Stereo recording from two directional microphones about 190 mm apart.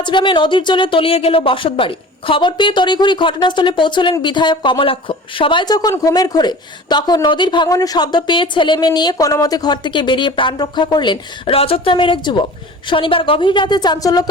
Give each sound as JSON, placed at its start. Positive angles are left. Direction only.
{"t": 0.0, "sound": "speech", "side_deg": 25}